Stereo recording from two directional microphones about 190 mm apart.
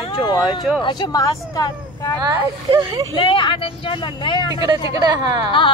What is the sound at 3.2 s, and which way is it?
Speech, 25° left (ahead or behind).